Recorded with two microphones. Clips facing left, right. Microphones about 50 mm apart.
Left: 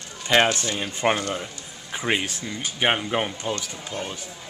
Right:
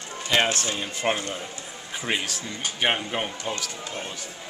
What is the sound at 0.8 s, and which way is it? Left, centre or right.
Speech, left.